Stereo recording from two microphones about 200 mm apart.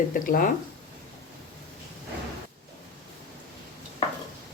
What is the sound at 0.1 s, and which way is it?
Speech, 45° left (ahead or behind).